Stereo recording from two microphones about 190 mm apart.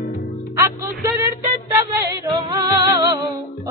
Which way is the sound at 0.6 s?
10° right (ahead or behind).